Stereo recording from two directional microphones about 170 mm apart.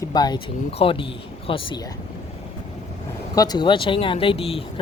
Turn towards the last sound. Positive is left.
turn(degrees=35)  # may be behind; listen again after turning